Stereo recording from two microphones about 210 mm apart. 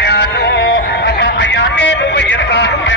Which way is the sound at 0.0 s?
50° left (ahead or behind).